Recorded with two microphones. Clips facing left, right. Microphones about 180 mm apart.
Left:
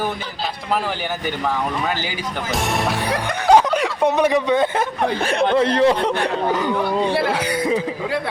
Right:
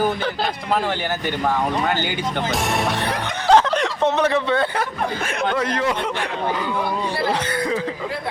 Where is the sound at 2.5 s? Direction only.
Centre (ahead or behind).